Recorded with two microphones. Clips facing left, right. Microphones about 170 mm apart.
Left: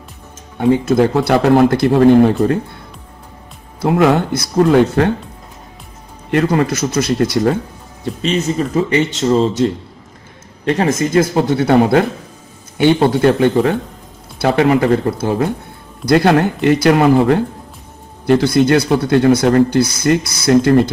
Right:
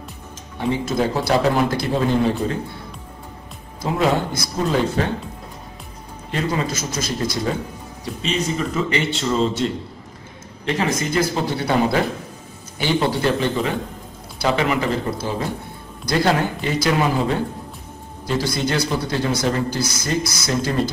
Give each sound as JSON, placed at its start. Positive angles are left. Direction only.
{"t": 0.6, "sound": "speech", "side_deg": 60}
{"t": 3.8, "sound": "speech", "side_deg": 70}
{"t": 6.3, "sound": "speech", "side_deg": 60}
{"t": 8.0, "sound": "speech", "side_deg": 40}
{"t": 10.8, "sound": "speech", "side_deg": 45}